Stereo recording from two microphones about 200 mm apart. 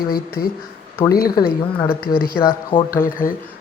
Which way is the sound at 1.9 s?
50° left (ahead or behind).